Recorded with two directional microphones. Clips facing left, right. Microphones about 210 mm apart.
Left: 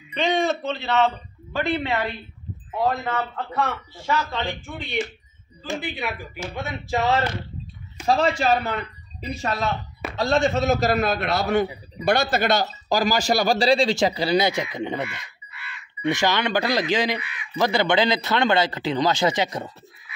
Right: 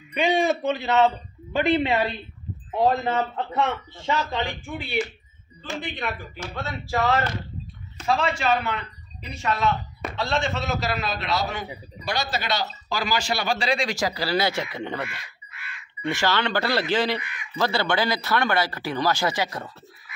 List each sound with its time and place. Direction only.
0.1 s a man's voice: 10° right (ahead or behind)
5.8 s speech: 5° left (ahead or behind); by 7.2 s 20° left (ahead or behind)
8.1 s a man's voice: 35° left (ahead or behind); by 15.2 s 15° left (ahead or behind)
15.5 s crow: 50° right (ahead or behind)
16.1 s speech: 15° left (ahead or behind)
17.2 s speech: 45° right (ahead or behind)
17.6 s speech: 15° left (ahead or behind)